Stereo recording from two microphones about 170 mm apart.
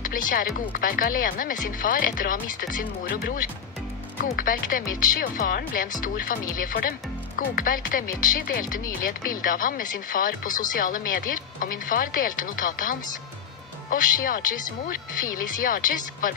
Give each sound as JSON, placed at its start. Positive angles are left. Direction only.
{"t": 0.0, "sound": "speech", "side_deg": 55}